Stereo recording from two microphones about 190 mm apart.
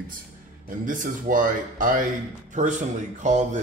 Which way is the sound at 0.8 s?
45° right (ahead or behind).